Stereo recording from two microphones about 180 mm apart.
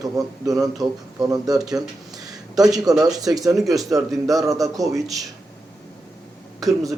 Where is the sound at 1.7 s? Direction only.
20° right (ahead or behind).